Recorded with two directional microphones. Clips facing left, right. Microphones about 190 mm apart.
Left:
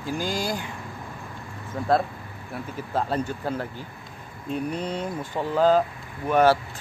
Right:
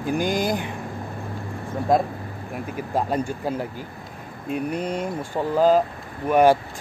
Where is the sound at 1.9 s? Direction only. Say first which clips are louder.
Right 2 dB; 15° right (ahead or behind).